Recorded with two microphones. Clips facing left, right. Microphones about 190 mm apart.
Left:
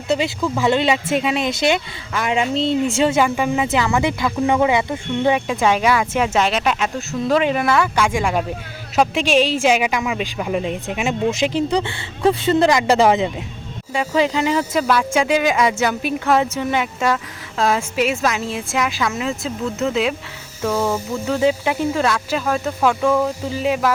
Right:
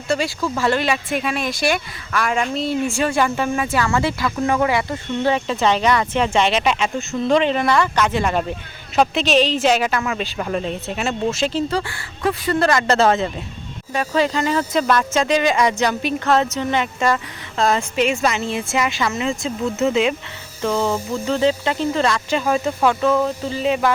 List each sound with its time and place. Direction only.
0.1 s speech: 20° left (ahead or behind)